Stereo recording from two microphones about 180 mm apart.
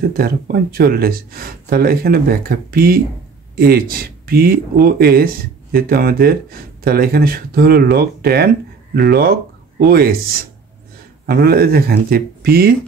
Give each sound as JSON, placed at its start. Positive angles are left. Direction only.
{"t": 0.2, "sound": "speech", "side_deg": -55}